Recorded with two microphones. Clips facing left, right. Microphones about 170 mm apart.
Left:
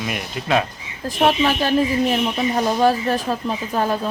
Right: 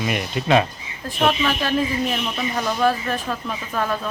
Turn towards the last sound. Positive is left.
turn(degrees=30)  # may be behind; listen again after turning